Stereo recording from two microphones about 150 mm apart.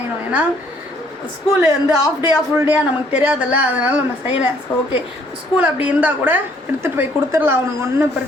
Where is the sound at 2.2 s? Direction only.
15° right (ahead or behind).